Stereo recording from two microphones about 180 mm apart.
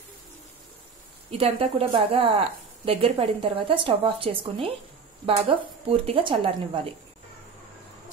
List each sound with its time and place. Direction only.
1.4 s a woman's voice: 30° right (ahead or behind)